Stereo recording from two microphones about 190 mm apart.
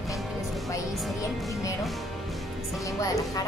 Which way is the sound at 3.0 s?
15° left (ahead or behind).